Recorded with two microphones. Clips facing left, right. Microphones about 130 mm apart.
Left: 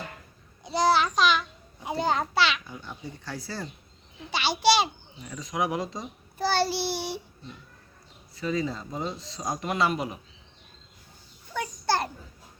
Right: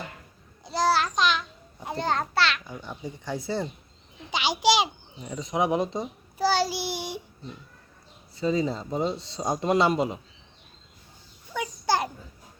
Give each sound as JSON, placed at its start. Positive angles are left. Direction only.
{"t": 0.6, "sound": "a sound", "side_deg": 0}
{"t": 2.8, "sound": "a child's voice", "side_deg": -15}
{"t": 5.2, "sound": "speech", "side_deg": -25}
{"t": 6.4, "sound": "child singing", "side_deg": -10}
{"t": 8.4, "sound": "speech", "side_deg": -25}
{"t": 11.5, "sound": "a sound", "side_deg": -15}